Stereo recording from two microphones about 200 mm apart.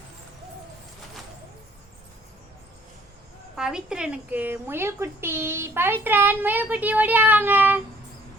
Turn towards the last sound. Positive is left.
turn(degrees=-10)  # may be behind; listen again after turning